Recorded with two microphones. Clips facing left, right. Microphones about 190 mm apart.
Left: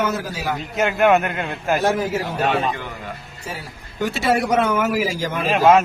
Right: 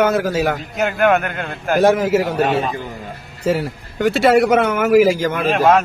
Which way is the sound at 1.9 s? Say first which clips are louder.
Right 6 dB; 85° right.